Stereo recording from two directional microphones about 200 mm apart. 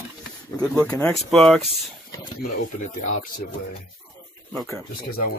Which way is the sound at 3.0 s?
45° left (ahead or behind).